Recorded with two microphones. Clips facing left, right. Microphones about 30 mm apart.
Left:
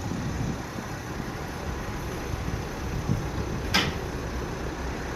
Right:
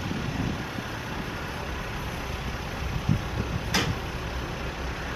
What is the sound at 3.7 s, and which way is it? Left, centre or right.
Tick-tock, left.